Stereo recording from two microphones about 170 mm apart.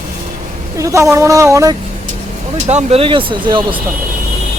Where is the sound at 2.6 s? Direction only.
40° right (ahead or behind).